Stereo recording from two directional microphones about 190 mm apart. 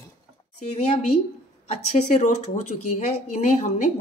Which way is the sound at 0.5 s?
35° left (ahead or behind).